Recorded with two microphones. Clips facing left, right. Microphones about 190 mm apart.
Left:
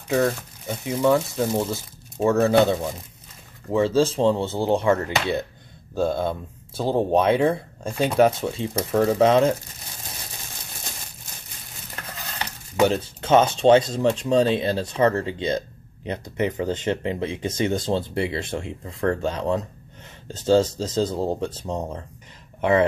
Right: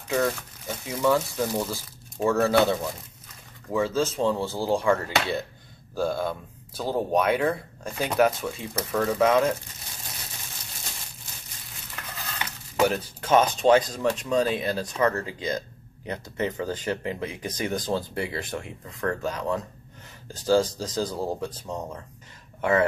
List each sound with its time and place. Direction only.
0.8 s speech: 20° left (ahead or behind)
12.8 s speech: 25° left (ahead or behind)